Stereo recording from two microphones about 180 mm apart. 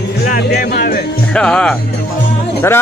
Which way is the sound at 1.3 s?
5° left (ahead or behind).